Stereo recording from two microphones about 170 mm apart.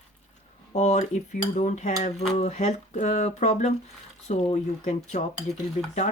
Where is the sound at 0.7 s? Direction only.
40° left (ahead or behind).